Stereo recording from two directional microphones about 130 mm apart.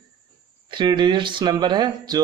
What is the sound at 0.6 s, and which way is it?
Speech, 35° right (ahead or behind).